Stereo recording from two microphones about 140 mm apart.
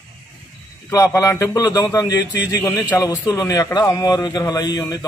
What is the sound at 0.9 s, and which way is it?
A man's voice, 20° left (ahead or behind).